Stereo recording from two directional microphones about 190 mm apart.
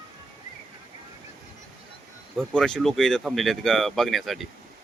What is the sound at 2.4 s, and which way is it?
Speech, 5° left (ahead or behind).